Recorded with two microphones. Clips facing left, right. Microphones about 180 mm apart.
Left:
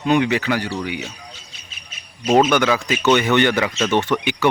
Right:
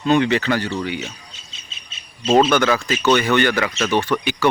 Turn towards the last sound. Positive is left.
turn(degrees=20)  # may be behind; listen again after turning